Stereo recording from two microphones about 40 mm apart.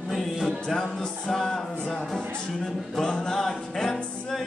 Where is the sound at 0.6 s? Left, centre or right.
Centre.